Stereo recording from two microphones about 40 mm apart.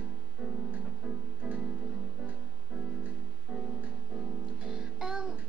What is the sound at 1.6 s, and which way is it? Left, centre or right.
Music, right.